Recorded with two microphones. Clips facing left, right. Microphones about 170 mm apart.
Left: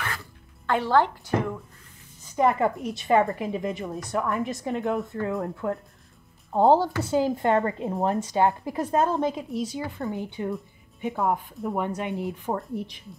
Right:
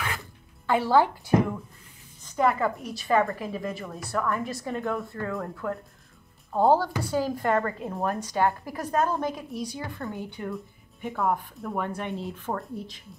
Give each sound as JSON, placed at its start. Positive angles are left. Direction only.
{"t": 0.7, "sound": "a woman's voice", "side_deg": -5}
{"t": 2.2, "sound": "a woman's voice", "side_deg": 20}